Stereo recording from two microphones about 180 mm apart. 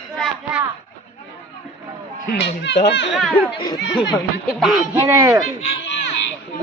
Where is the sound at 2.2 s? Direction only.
65° left (ahead or behind).